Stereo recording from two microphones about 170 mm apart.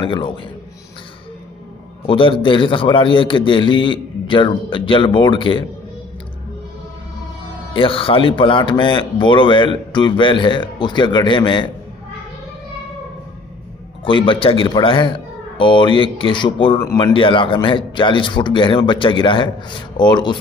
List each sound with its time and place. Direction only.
0.0 s speech: 30° left (ahead or behind)
2.0 s speech: 30° left (ahead or behind)
7.7 s speech: 30° left (ahead or behind)
14.0 s speech: 30° left (ahead or behind)